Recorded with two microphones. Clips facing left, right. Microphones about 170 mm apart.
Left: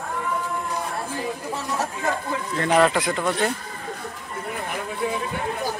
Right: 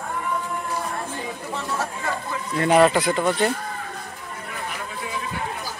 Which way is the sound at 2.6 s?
5° right (ahead or behind).